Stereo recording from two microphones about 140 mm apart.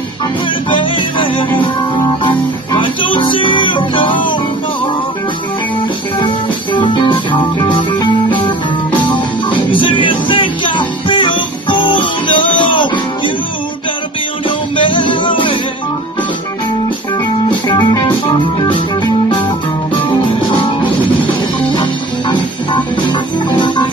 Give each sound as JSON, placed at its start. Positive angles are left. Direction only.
{"t": 0.7, "sound": "music", "side_deg": 35}
{"t": 6.1, "sound": "music", "side_deg": 30}
{"t": 14.8, "sound": "music", "side_deg": 35}
{"t": 17.5, "sound": "music", "side_deg": 30}
{"t": 22.3, "sound": "music", "side_deg": 35}